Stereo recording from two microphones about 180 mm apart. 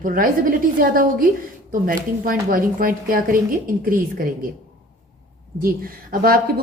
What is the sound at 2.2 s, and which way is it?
A woman's voice, 55° right (ahead or behind).